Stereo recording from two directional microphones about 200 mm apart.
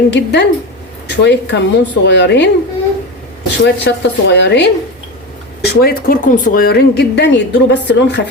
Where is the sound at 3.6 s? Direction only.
60° left (ahead or behind).